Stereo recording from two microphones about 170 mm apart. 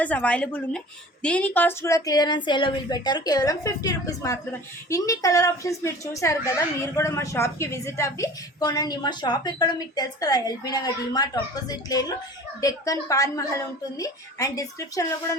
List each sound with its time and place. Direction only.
0.0 s a woman's voice: 10° left (ahead or behind)